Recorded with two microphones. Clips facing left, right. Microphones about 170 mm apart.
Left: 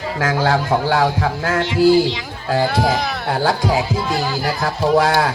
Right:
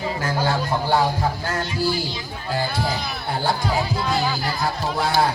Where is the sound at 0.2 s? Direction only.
90° left.